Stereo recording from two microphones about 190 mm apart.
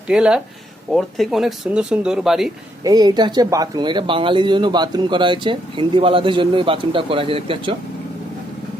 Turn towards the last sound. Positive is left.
turn(degrees=-30)  # may be behind; listen again after turning